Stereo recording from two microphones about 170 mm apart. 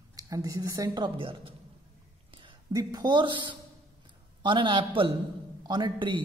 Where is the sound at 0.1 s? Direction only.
20° right (ahead or behind).